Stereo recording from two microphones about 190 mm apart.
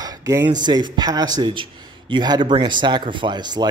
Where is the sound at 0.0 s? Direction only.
20° right (ahead or behind).